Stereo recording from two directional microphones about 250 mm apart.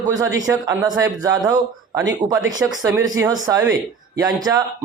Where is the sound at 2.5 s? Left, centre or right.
Centre.